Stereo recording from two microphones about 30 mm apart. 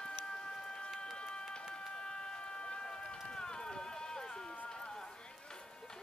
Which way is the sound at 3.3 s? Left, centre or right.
Left.